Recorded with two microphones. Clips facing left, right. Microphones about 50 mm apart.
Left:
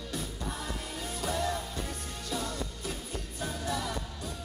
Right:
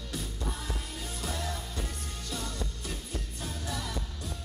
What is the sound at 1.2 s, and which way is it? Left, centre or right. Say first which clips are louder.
Music: left 5 dB; centre.